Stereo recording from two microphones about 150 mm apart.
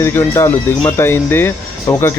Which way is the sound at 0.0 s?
15° left (ahead or behind).